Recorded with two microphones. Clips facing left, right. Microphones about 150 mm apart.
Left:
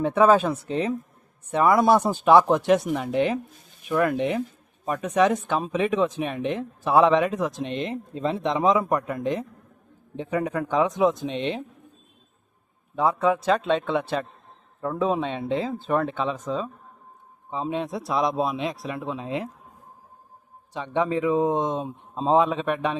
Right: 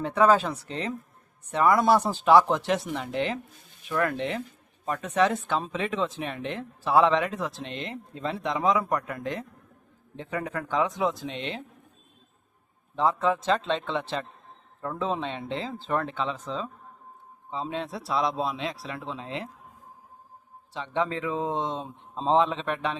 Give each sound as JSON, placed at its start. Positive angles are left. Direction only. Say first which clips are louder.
{"t": 0.0, "sound": "speech", "louder": "left 3 dB", "side_deg": 15}
{"t": 13.0, "sound": "speech", "louder": "left 3 dB", "side_deg": 10}
{"t": 20.7, "sound": "speech", "louder": "left 4 dB", "side_deg": 20}